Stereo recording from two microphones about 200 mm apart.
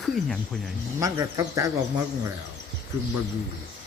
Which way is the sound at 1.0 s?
15° right (ahead or behind).